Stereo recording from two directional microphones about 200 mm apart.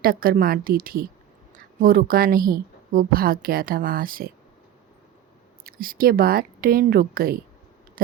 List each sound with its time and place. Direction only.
0.0 s speech: 45° right (ahead or behind)
5.6 s speech: 45° right (ahead or behind)